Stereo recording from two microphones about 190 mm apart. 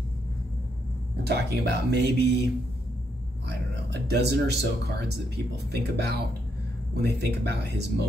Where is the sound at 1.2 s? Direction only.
60° right (ahead or behind).